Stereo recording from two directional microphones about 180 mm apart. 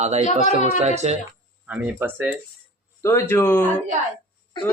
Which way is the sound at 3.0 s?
15° left (ahead or behind).